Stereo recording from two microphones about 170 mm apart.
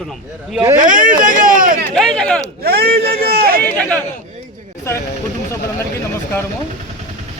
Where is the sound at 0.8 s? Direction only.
50° right (ahead or behind).